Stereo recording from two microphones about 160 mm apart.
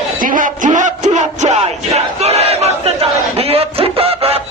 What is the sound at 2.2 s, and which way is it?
Battle cry, 40° right (ahead or behind).